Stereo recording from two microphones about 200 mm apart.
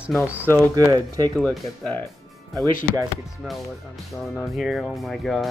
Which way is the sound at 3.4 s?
Centre (ahead or behind).